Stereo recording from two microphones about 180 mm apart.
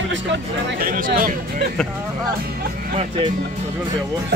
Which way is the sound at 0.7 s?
50° right (ahead or behind).